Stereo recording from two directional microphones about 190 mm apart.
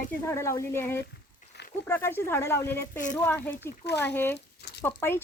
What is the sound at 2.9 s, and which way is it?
Speech, 40° left (ahead or behind).